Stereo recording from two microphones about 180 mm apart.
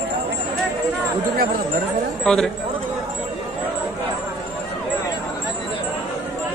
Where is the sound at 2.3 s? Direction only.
Centre (ahead or behind).